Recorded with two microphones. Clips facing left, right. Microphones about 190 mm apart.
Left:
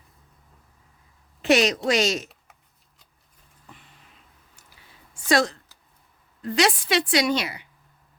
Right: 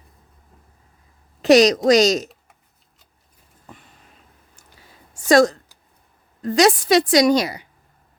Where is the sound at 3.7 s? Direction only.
45° right (ahead or behind).